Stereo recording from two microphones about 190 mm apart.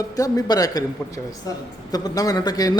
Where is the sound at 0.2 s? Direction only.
20° left (ahead or behind).